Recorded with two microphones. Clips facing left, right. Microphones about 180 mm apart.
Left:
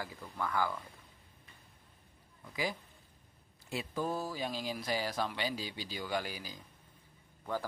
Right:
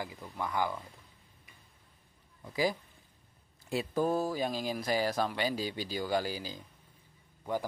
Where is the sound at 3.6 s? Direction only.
45° right (ahead or behind).